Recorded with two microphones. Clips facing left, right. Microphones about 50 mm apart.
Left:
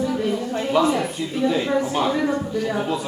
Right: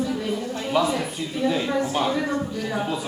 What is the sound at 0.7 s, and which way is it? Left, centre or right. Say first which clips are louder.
A woman's voice: left 3 dB; centre.